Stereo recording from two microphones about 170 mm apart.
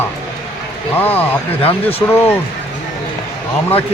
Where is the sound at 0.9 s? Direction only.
10° left (ahead or behind).